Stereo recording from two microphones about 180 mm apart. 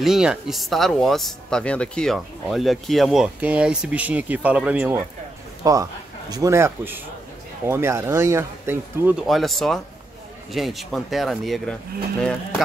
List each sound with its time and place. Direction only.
0.0 s speech: 5° right (ahead or behind)